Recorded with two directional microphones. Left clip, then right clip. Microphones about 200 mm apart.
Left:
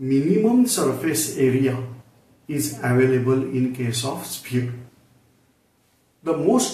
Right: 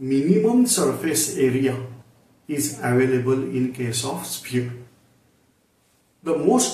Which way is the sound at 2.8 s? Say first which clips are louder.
Left 1 dB; 5° left (ahead or behind).